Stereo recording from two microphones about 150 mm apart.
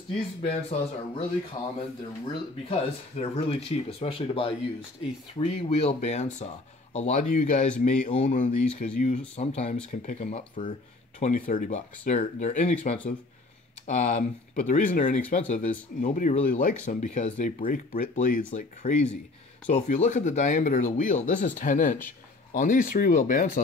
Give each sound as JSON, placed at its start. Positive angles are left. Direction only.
{"t": 0.5, "sound": "speech", "side_deg": 40}
{"t": 1.6, "sound": "speech", "side_deg": 25}
{"t": 2.7, "sound": "speech", "side_deg": 45}
{"t": 13.8, "sound": "speech", "side_deg": 50}